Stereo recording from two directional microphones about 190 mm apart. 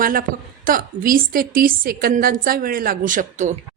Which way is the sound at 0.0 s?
50° right (ahead or behind).